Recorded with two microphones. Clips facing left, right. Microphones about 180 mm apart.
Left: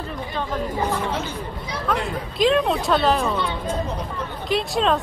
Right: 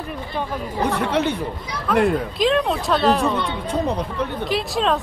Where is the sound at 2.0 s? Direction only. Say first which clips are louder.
Right 2 dB; centre (ahead or behind).